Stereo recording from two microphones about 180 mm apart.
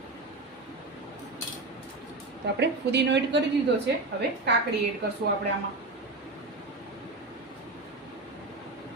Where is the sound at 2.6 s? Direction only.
70° right (ahead or behind).